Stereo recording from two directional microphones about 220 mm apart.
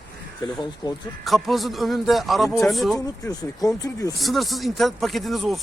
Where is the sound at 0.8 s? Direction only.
20° left (ahead or behind).